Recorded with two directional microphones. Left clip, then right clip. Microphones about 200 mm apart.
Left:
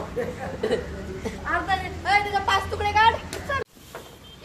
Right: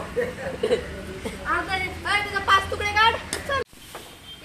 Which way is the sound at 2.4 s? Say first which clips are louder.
Right 3 dB; 45° left (ahead or behind).